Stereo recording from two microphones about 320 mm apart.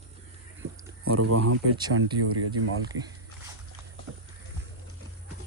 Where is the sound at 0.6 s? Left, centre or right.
Right.